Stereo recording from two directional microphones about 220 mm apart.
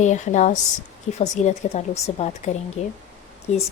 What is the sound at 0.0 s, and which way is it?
A woman's voice, 30° left (ahead or behind).